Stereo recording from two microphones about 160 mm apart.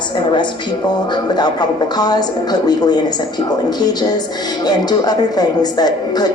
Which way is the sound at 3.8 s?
25° left (ahead or behind).